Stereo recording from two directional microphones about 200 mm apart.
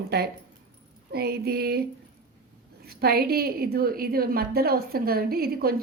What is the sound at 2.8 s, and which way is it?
A woman's voice, 50° right (ahead or behind).